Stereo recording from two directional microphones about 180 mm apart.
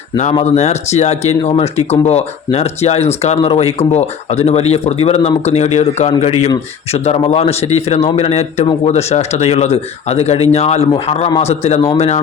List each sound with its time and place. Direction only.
0.4 s speech: 40° left (ahead or behind)